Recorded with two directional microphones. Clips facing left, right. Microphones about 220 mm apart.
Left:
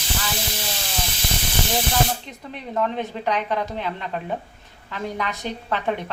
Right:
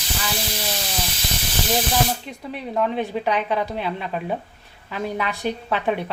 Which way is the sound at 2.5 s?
10° right (ahead or behind).